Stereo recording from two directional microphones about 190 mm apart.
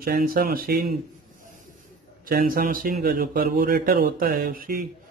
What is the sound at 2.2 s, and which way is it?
A man's voice, 50° right (ahead or behind).